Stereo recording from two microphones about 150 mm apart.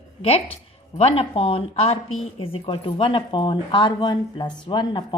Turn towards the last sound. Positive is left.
turn(degrees=30)  # may be behind; listen again after turning